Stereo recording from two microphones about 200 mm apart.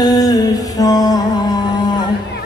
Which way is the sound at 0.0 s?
20° left (ahead or behind).